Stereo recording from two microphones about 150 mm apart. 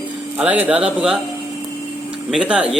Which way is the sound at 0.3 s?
10° right (ahead or behind).